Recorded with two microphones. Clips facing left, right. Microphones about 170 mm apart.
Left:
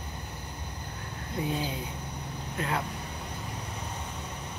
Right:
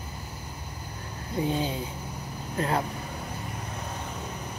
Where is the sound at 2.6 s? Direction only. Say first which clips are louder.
Right 5 dB; 35° right (ahead or behind).